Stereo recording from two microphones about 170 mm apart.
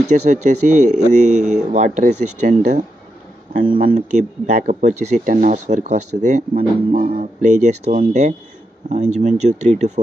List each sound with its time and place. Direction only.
0.0 s speech: 45° right (ahead or behind)